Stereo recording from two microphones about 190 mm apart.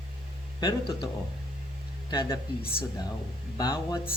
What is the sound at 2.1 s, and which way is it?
Speech, 20° left (ahead or behind).